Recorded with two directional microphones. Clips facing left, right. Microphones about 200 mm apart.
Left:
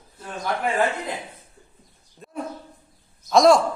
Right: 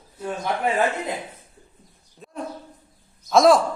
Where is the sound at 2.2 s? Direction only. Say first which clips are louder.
Even; centre (ahead or behind).